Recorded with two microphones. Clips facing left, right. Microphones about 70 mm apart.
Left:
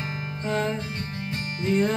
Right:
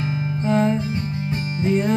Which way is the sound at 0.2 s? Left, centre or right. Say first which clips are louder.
Right 7 dB; centre.